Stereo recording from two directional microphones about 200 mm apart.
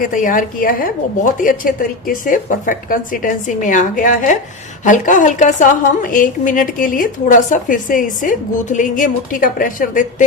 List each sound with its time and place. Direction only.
0.0 s a woman's voice: 40° left (ahead or behind)